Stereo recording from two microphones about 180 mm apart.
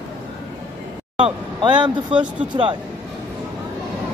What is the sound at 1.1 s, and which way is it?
Speech, 25° right (ahead or behind).